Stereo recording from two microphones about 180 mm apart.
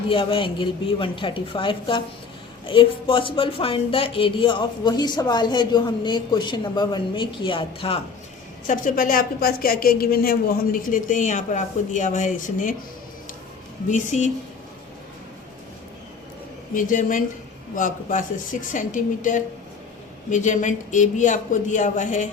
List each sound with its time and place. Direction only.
0.1 s speech: 30° left (ahead or behind)
8.6 s a woman's voice: 45° left (ahead or behind)
13.8 s a woman's voice: 45° left (ahead or behind)
16.7 s a woman's voice: 45° left (ahead or behind)